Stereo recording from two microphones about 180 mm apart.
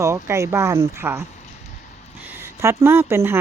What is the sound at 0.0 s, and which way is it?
A woman's voice, 15° right (ahead or behind).